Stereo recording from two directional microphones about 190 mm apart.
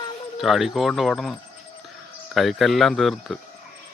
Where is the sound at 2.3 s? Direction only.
Centre (ahead or behind).